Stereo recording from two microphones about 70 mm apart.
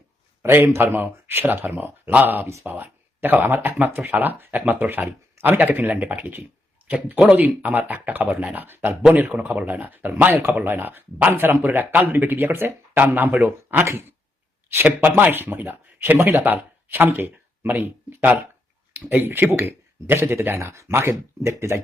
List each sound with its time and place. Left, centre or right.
0.4 s speech: right
9.1 s speech: right